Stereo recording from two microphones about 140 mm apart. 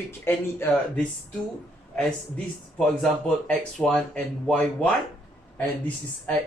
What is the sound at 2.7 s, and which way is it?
Speech, 5° left (ahead or behind).